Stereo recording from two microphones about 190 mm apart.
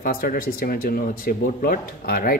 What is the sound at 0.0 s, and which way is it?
A man's voice, 50° left (ahead or behind).